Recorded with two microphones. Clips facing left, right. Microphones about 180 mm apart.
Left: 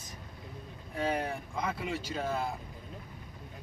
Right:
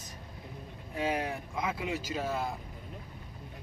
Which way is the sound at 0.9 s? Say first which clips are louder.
Even; 5° right (ahead or behind).